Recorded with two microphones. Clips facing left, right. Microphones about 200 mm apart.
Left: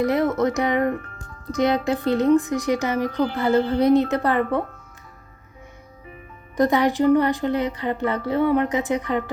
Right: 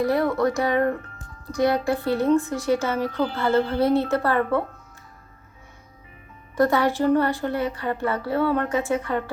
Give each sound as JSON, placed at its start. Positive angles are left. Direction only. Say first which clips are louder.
{"t": 0.0, "sound": "a woman's voice", "louder": "left 1 dB", "side_deg": 20}
{"t": 6.6, "sound": "a woman's voice", "louder": "left 2 dB", "side_deg": 20}